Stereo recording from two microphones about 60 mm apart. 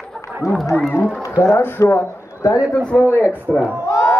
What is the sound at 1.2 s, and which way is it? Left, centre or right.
Speech, left.